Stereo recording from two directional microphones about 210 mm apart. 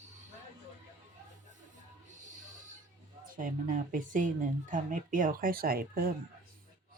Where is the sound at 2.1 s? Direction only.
35° right (ahead or behind).